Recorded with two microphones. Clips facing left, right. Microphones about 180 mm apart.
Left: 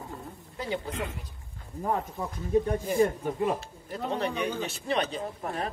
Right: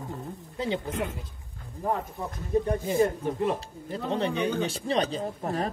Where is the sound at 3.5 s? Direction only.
30° right (ahead or behind).